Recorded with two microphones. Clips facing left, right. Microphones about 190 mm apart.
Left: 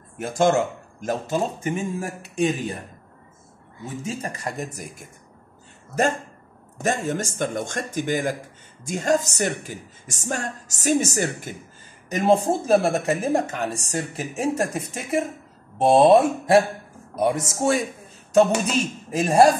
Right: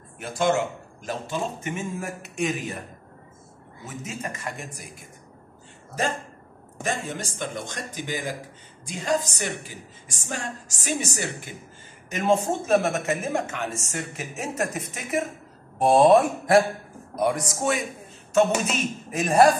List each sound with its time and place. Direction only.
0.2 s a woman's voice: 45° left (ahead or behind)
3.8 s speech: 30° left (ahead or behind)
6.8 s a woman's voice: 45° left (ahead or behind); by 19.5 s 30° left (ahead or behind)